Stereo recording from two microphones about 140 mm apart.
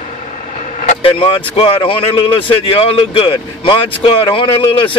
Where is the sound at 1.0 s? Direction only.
40° left (ahead or behind).